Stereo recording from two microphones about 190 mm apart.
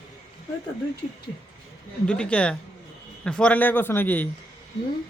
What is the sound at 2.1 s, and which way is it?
A man's voice, 5° left (ahead or behind).